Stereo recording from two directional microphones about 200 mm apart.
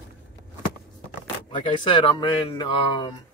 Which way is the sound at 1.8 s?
25° left (ahead or behind).